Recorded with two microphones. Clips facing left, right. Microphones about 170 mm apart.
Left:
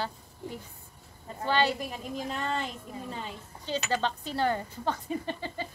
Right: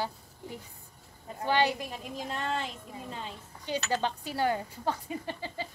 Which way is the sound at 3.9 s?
10° right (ahead or behind).